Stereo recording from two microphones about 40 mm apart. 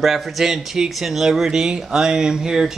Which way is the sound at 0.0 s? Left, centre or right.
Centre.